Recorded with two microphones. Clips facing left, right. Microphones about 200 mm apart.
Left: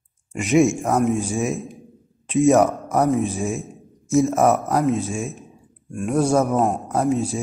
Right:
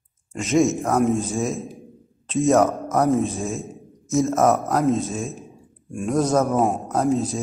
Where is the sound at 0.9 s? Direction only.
Centre (ahead or behind).